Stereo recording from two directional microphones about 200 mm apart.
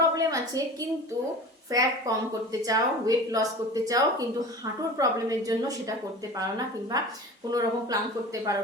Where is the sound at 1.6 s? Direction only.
20° right (ahead or behind).